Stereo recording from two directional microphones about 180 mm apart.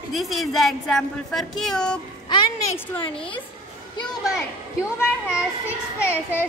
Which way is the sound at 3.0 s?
30° left (ahead or behind).